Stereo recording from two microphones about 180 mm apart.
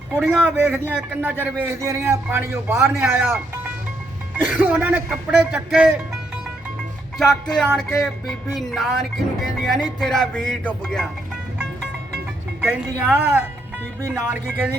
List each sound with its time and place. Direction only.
0.3 s a man's voice: 10° right (ahead or behind)
4.4 s a man's voice: 10° right (ahead or behind)
7.8 s music: 5° left (ahead or behind)
12.7 s a man's voice: 10° right (ahead or behind)